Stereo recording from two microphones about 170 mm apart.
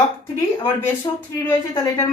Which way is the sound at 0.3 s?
20° left (ahead or behind).